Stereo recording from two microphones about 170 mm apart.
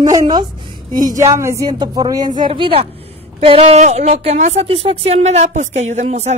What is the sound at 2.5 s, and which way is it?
A woman's voice, 30° right (ahead or behind).